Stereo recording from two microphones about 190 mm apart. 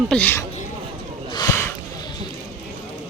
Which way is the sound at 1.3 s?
15° left (ahead or behind).